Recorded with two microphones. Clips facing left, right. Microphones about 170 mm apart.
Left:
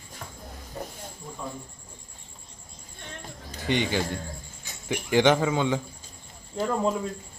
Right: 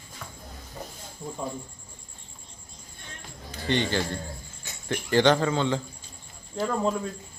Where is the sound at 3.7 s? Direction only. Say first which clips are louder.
Even; 10° left (ahead or behind).